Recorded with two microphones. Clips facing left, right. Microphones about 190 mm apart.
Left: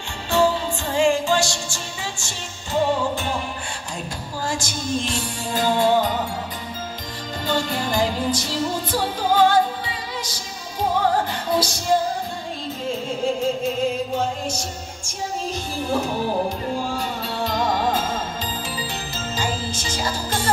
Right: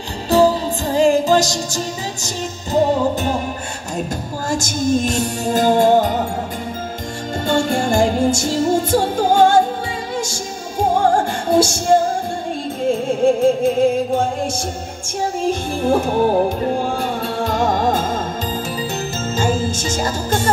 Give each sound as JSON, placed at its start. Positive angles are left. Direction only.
{"t": 0.3, "sound": "music", "side_deg": -40}
{"t": 4.5, "sound": "music", "side_deg": -45}
{"t": 7.4, "sound": "music", "side_deg": -50}
{"t": 19.3, "sound": "music", "side_deg": -45}